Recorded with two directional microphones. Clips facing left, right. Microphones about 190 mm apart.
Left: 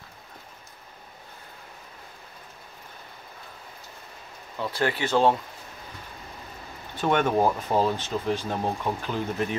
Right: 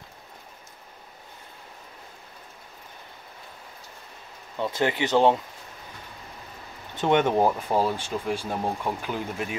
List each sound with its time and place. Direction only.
4.6 s speech: 20° right (ahead or behind)
7.0 s speech: 20° right (ahead or behind)